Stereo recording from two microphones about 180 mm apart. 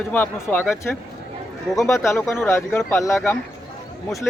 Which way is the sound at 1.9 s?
15° left (ahead or behind).